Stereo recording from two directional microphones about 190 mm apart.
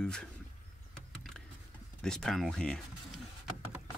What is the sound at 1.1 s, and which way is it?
Vehicle, centre (ahead or behind).